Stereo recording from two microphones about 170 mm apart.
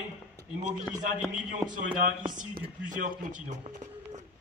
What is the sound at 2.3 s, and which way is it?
A man's voice, 50° right (ahead or behind).